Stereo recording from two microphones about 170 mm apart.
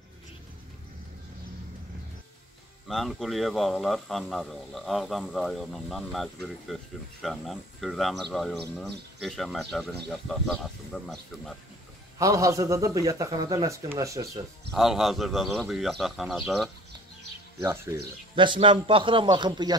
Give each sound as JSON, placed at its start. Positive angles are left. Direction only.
{"t": 2.9, "sound": "a man's voice", "side_deg": 0}
{"t": 12.2, "sound": "a man's voice", "side_deg": -20}
{"t": 14.7, "sound": "a man's voice", "side_deg": 0}
{"t": 17.6, "sound": "speech", "side_deg": -15}
{"t": 18.3, "sound": "a man's voice", "side_deg": -30}